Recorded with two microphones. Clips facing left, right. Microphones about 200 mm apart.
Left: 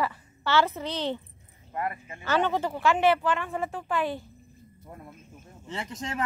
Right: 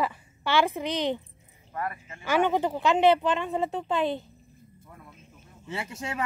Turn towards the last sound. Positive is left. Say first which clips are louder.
# even
turn(degrees=-10)  # may be behind; listen again after turning